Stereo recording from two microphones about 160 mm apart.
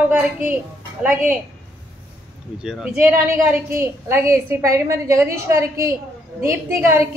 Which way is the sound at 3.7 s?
15° right (ahead or behind).